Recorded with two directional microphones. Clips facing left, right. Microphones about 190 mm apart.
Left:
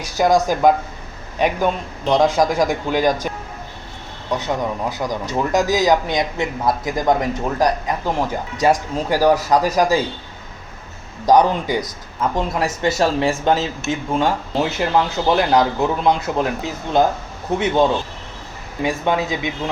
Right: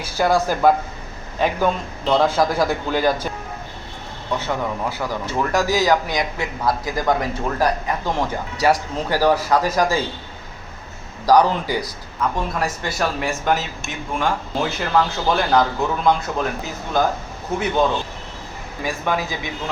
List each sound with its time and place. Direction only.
0.2 s speech: 20° left (ahead or behind)
4.3 s speech: 15° left (ahead or behind)
11.3 s speech: 20° left (ahead or behind)
18.8 s speech: 25° left (ahead or behind)